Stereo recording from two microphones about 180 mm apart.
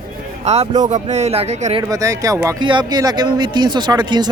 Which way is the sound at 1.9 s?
20° right (ahead or behind).